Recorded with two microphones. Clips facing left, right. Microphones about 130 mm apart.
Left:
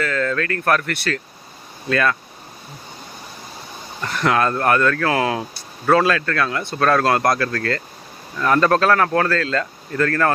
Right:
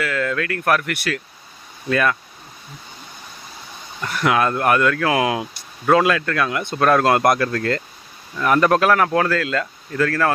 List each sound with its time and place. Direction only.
0.0 s speech: 10° right (ahead or behind)
4.0 s speech: 5° right (ahead or behind)